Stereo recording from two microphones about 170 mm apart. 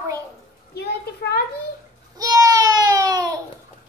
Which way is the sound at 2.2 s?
20° right (ahead or behind).